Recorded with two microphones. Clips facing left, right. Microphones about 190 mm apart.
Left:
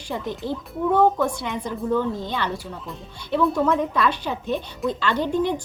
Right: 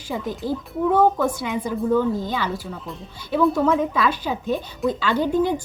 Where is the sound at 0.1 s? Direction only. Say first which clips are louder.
Right 2 dB; 5° right (ahead or behind).